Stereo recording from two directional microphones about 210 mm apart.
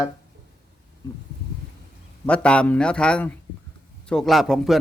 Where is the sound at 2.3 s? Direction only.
5° left (ahead or behind).